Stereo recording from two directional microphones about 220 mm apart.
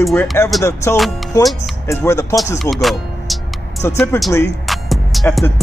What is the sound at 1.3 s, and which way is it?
Speech, 15° left (ahead or behind).